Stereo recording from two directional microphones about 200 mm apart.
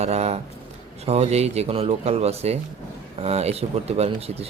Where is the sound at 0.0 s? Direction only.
35° right (ahead or behind).